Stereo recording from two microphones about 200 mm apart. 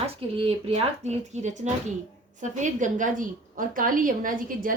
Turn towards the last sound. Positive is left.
turn(degrees=-45)  # may be behind; listen again after turning